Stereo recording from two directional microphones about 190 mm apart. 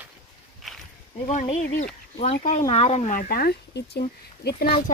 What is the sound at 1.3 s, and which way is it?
Speech, 40° left (ahead or behind).